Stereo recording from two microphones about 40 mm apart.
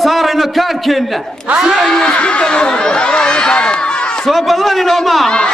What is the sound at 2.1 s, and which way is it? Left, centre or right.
Chatter, left.